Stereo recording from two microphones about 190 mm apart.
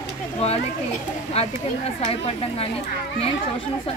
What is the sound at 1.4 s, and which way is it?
Speech, 35° left (ahead or behind).